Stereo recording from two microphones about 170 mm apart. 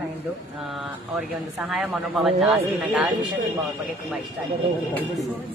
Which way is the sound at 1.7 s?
Centre (ahead or behind).